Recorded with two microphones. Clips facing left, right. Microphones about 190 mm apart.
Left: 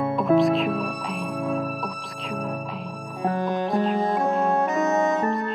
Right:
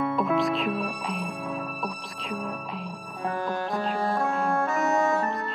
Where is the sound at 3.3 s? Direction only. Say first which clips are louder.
Left 5 dB; 20° left (ahead or behind).